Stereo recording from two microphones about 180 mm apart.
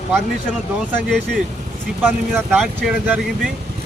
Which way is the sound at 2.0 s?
10° right (ahead or behind).